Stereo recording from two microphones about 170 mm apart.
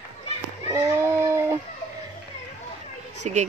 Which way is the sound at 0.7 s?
15° right (ahead or behind).